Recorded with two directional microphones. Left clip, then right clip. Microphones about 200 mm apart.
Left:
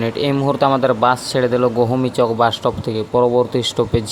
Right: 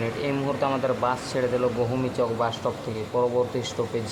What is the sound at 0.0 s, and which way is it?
Speech, 35° left (ahead or behind).